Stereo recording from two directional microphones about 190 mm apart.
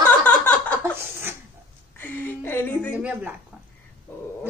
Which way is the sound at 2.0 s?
10° left (ahead or behind).